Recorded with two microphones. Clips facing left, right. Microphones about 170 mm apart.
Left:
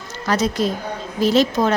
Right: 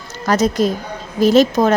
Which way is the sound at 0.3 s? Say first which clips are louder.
Right 4 dB; 45° right (ahead or behind).